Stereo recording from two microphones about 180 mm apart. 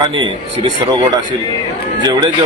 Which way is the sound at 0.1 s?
30° right (ahead or behind).